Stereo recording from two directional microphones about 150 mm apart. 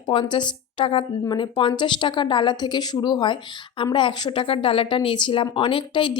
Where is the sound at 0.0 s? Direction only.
35° left (ahead or behind).